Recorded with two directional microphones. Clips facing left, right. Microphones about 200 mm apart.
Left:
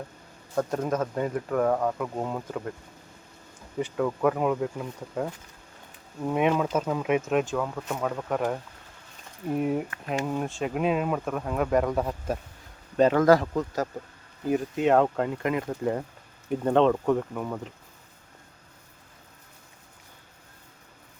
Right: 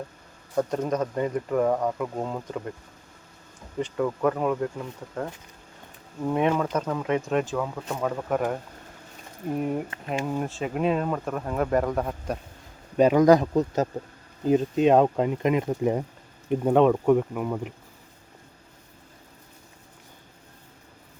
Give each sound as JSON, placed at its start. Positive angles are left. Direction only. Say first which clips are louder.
{"t": 0.5, "sound": "speech", "louder": "right 1 dB", "side_deg": 0}
{"t": 3.8, "sound": "speech", "louder": "even", "side_deg": 0}
{"t": 9.6, "sound": "speech", "louder": "left 2 dB", "side_deg": 0}
{"t": 13.0, "sound": "speech", "louder": "right 2 dB", "side_deg": -15}